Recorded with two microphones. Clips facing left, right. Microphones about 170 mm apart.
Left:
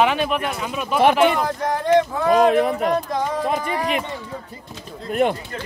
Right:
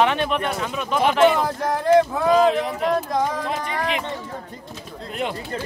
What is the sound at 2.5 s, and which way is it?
Speech, 50° left (ahead or behind).